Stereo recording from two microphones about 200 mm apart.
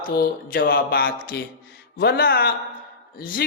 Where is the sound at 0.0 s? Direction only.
45° left (ahead or behind).